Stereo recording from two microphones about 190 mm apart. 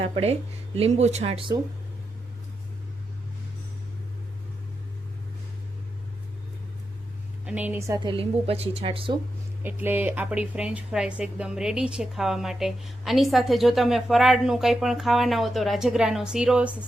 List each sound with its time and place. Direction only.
0.1 s speech: 35° right (ahead or behind)
7.4 s a woman's voice: 10° right (ahead or behind); by 9.1 s 30° right (ahead or behind)
9.6 s speech: 10° right (ahead or behind)